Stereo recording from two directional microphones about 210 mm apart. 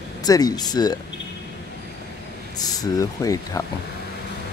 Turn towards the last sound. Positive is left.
turn(degrees=15)  # may be behind; listen again after turning